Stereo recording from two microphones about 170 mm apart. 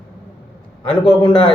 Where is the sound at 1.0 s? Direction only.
25° left (ahead or behind).